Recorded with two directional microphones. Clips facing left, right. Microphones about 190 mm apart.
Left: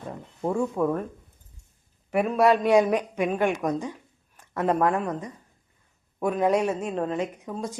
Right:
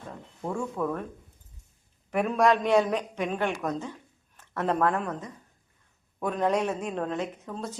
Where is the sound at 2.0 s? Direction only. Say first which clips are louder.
Left 3 dB; 5° left (ahead or behind).